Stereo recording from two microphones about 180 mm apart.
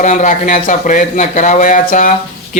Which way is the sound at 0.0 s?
45° left (ahead or behind).